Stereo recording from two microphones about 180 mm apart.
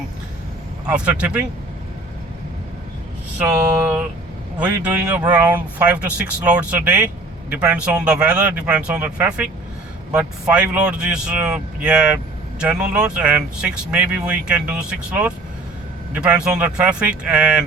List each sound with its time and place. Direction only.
0.9 s speech: 5° right (ahead or behind)
3.4 s speech: 10° right (ahead or behind)